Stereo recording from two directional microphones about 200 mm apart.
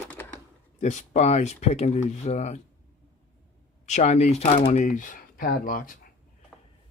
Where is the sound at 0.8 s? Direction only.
35° left (ahead or behind).